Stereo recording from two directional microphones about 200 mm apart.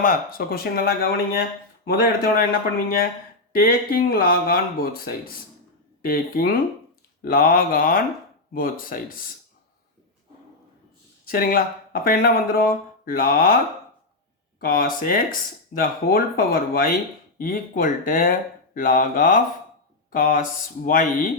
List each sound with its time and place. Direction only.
0.0 s speech: 45° left (ahead or behind)
11.3 s speech: 45° left (ahead or behind)
14.6 s speech: 45° left (ahead or behind)